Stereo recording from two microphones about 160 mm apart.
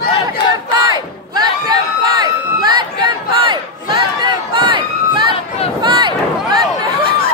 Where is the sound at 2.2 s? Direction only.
25° right (ahead or behind).